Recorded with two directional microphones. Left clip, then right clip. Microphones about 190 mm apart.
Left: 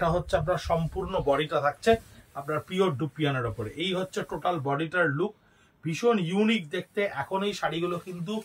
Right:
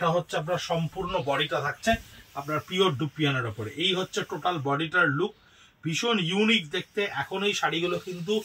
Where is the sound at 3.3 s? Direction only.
15° left (ahead or behind).